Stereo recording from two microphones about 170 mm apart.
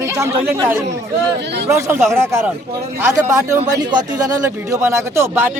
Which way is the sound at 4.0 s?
50° right (ahead or behind).